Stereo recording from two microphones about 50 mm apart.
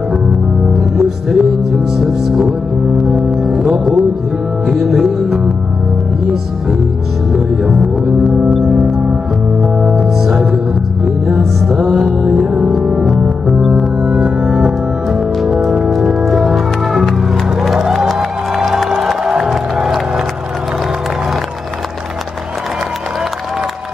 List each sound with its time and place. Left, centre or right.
0.7 s music: centre
3.0 s music: centre
7.3 s music: centre
9.6 s music: centre
13.1 s music: right
13.6 s music: centre